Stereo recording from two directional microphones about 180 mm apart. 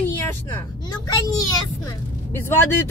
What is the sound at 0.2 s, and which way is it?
Vehicle, 15° left (ahead or behind).